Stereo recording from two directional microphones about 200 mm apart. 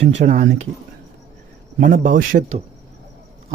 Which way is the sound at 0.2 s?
35° right (ahead or behind).